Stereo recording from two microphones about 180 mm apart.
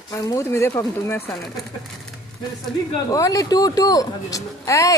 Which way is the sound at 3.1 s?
20° left (ahead or behind).